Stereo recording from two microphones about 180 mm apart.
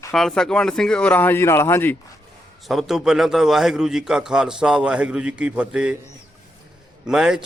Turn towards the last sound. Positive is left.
turn(degrees=-5)  # may be behind; listen again after turning